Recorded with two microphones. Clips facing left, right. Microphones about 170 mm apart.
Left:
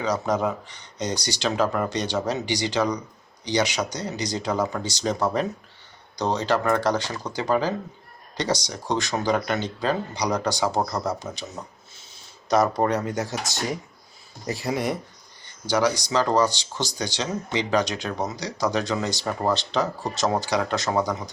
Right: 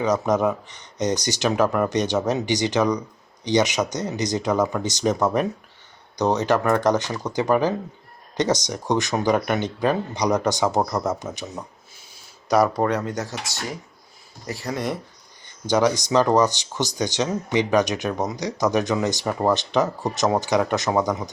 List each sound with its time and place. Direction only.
0.0 s speech: 20° right (ahead or behind)
12.9 s speech: 5° left (ahead or behind)
14.4 s speech: 15° left (ahead or behind)
15.6 s speech: 20° right (ahead or behind)